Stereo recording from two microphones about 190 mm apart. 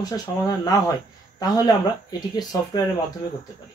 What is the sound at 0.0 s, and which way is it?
Speech, 20° left (ahead or behind).